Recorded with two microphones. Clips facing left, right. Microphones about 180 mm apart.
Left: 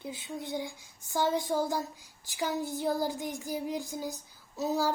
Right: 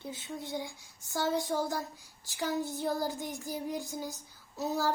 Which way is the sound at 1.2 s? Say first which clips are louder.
Left 2 dB; 20° left (ahead or behind).